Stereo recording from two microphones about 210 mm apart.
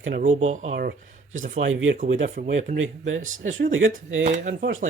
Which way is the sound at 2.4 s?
40° right (ahead or behind).